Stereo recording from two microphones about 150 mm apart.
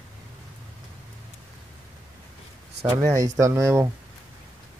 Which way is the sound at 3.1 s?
20° right (ahead or behind).